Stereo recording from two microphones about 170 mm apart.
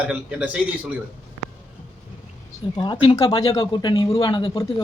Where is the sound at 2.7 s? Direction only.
25° left (ahead or behind).